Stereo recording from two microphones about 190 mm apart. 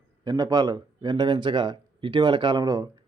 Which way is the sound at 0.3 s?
20° right (ahead or behind).